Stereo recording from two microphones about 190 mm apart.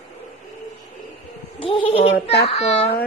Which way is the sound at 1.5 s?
25° left (ahead or behind).